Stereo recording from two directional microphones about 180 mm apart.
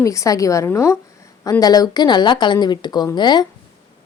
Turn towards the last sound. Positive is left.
turn(degrees=25)  # may be behind; listen again after turning